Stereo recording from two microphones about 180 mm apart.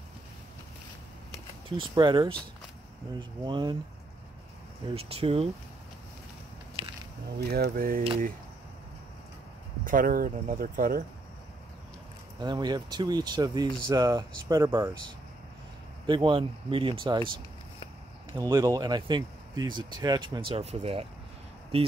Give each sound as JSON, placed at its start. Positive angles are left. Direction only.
{"t": 1.8, "sound": "speech", "side_deg": -25}
{"t": 4.9, "sound": "speech", "side_deg": -30}
{"t": 7.3, "sound": "speech", "side_deg": -60}
{"t": 9.8, "sound": "speech", "side_deg": -50}
{"t": 12.4, "sound": "speech", "side_deg": -25}
{"t": 16.1, "sound": "speech", "side_deg": -25}
{"t": 18.3, "sound": "speech", "side_deg": -20}